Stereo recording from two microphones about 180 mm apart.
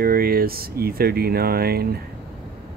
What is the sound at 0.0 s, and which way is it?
Speech, 55° right (ahead or behind).